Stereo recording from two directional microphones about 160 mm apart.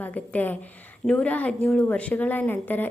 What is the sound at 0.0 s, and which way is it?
Speech, 10° left (ahead or behind).